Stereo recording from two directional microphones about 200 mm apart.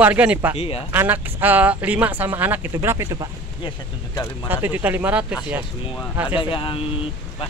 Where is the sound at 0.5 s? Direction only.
30° left (ahead or behind).